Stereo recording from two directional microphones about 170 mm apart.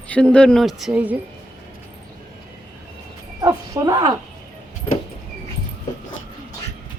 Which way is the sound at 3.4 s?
25° right (ahead or behind).